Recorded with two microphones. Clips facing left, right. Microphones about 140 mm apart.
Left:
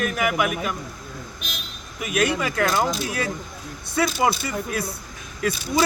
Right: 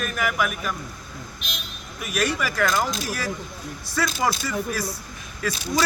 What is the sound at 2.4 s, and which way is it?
Speech, 25° left (ahead or behind).